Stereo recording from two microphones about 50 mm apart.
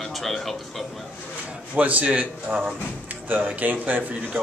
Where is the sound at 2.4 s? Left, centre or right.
Right.